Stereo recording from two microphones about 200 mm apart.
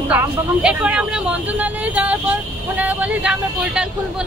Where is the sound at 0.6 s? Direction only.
5° right (ahead or behind).